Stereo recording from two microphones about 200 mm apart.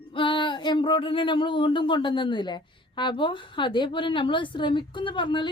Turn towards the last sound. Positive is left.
turn(degrees=25)  # may be behind; listen again after turning